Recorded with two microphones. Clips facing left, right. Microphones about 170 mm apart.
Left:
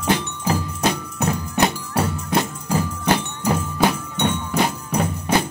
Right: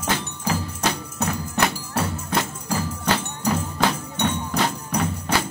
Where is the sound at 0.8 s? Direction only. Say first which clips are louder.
Left 3 dB; 15° left (ahead or behind).